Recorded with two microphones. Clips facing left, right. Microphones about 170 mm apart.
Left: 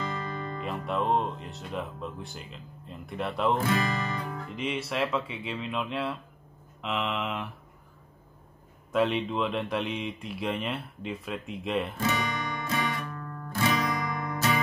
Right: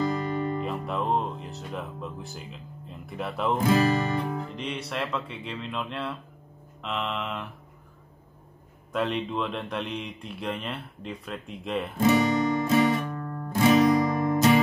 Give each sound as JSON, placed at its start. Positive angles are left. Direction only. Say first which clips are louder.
{"t": 0.1, "sound": "music", "louder": "right 7 dB", "side_deg": -15}
{"t": 0.6, "sound": "speech", "louder": "right 1 dB", "side_deg": 0}
{"t": 4.2, "sound": "music", "louder": "right 6 dB", "side_deg": -25}
{"t": 4.6, "sound": "speech", "louder": "left 2 dB", "side_deg": 0}
{"t": 8.9, "sound": "speech", "louder": "left 2 dB", "side_deg": 0}
{"t": 12.0, "sound": "music", "louder": "right 9 dB", "side_deg": -25}